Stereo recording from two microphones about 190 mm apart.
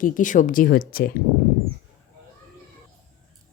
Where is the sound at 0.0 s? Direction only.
45° left (ahead or behind).